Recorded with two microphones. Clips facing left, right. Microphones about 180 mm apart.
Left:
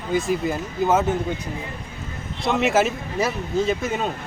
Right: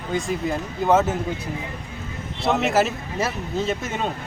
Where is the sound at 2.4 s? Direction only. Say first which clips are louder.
Left 1 dB; centre (ahead or behind).